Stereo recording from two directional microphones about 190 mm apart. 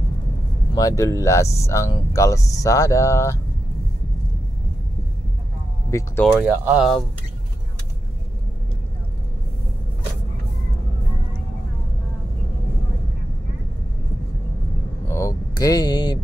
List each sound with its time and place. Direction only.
0.7 s speech: 15° left (ahead or behind)
5.9 s speech: 15° left (ahead or behind)
6.4 s speech: 10° right (ahead or behind)
15.0 s vehicle: 15° left (ahead or behind)